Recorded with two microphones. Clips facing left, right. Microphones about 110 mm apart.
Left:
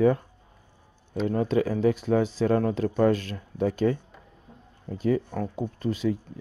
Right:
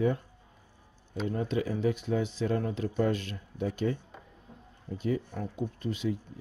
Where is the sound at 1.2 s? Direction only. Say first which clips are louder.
Left 7 dB; 65° left (ahead or behind).